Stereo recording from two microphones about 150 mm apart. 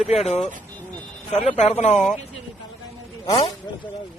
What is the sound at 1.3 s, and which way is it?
Speech, 45° left (ahead or behind).